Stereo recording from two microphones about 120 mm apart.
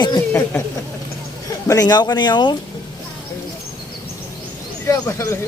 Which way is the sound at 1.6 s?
30° left (ahead or behind).